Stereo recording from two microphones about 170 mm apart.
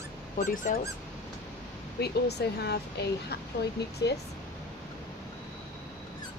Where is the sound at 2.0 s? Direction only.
75° left (ahead or behind).